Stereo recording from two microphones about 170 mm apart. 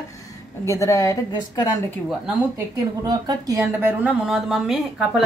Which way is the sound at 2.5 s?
20° right (ahead or behind).